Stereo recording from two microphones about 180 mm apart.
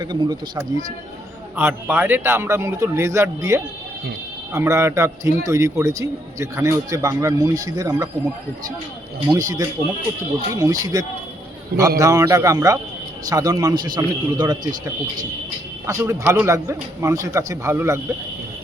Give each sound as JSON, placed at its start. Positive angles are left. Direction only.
{"t": 0.0, "sound": "a man's voice", "side_deg": -25}
{"t": 1.5, "sound": "a man's voice", "side_deg": -10}
{"t": 9.3, "sound": "a man's voice", "side_deg": -20}
{"t": 15.9, "sound": "a man's voice", "side_deg": -15}